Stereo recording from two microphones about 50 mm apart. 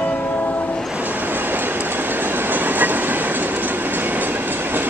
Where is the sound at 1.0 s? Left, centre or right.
Right.